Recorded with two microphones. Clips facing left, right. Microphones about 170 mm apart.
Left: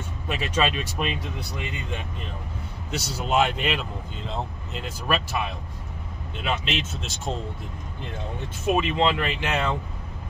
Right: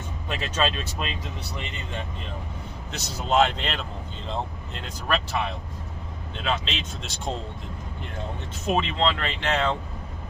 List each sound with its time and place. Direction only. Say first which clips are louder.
0.3 s speech: left 2 dB; 10° left (ahead or behind)
2.9 s speech: even; 10° left (ahead or behind)
6.3 s speech: left 1 dB; 10° left (ahead or behind)
8.6 s speech: left 2 dB; 10° left (ahead or behind)